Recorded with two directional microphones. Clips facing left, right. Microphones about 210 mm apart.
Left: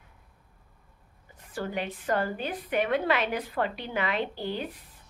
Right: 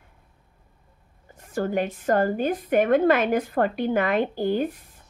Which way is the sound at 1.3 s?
45° right (ahead or behind).